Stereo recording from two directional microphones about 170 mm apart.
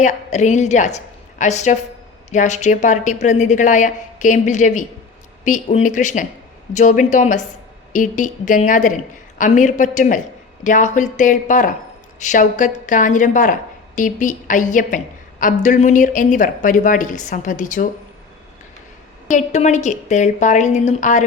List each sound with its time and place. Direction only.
0.0 s a woman's voice: 45° left (ahead or behind)
19.3 s a woman's voice: 45° left (ahead or behind)